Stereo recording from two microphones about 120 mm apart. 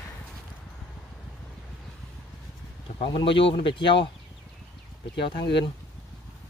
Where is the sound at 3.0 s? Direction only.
45° left (ahead or behind).